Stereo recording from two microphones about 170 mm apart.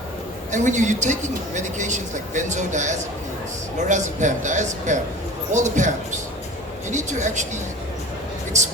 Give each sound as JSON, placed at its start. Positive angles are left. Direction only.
{"t": 0.5, "sound": "speech", "side_deg": -45}
{"t": 6.9, "sound": "speech", "side_deg": -45}